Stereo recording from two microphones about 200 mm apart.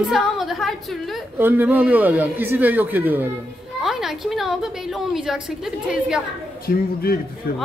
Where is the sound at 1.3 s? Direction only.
10° right (ahead or behind).